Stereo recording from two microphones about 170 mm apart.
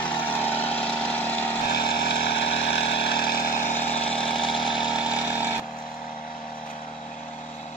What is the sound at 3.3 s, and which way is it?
Vehicle, 50° left (ahead or behind).